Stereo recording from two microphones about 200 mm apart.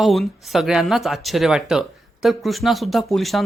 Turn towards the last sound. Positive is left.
turn(degrees=0)  # may be behind; listen again after turning